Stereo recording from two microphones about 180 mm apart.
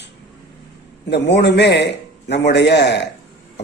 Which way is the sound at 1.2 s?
70° left (ahead or behind).